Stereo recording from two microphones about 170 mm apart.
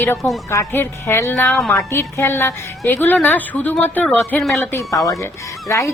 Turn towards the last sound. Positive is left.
turn(degrees=20)  # may be behind; listen again after turning